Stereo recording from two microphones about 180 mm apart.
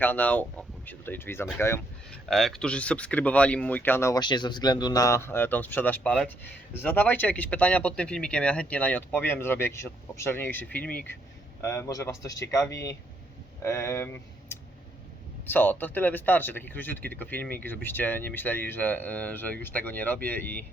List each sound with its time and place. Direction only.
0.0 s speech: 10° left (ahead or behind)
2.3 s speech: centre (ahead or behind)